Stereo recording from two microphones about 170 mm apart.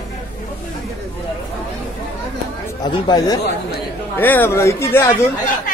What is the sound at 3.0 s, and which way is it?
Speech, 25° left (ahead or behind).